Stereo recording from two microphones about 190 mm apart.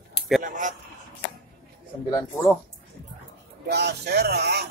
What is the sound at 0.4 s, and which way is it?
Speech, 40° right (ahead or behind).